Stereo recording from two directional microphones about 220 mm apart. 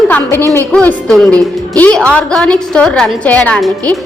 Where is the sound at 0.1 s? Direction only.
10° left (ahead or behind).